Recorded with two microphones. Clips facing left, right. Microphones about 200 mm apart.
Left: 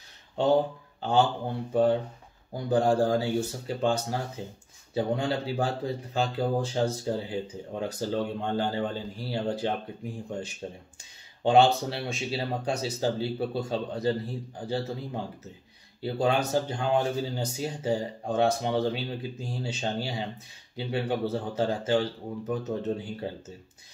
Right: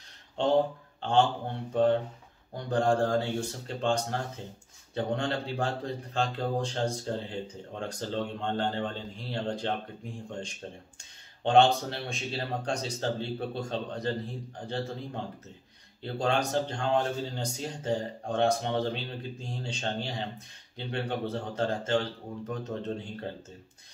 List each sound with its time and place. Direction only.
1.0 s a man's voice: 5° left (ahead or behind)